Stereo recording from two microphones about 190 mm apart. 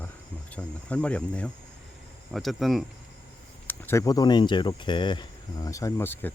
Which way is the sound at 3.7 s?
15° left (ahead or behind).